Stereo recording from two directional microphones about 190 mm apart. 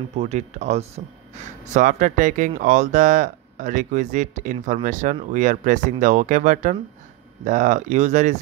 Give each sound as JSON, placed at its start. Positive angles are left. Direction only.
{"t": 0.1, "sound": "speech", "side_deg": -35}